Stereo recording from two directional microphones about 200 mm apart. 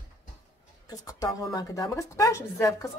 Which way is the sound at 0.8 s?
20° left (ahead or behind).